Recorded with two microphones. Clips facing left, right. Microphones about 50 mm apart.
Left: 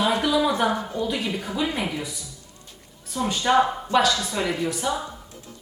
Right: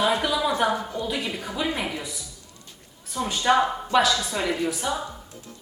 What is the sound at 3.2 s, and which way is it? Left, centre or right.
A woman's voice, centre.